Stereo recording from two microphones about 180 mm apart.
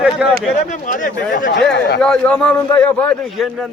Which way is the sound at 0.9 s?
45° left (ahead or behind).